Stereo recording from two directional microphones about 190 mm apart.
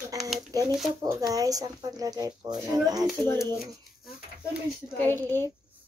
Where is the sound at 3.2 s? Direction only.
15° left (ahead or behind).